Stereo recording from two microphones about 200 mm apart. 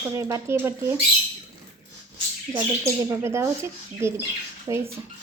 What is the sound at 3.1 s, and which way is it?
Speech, 15° right (ahead or behind).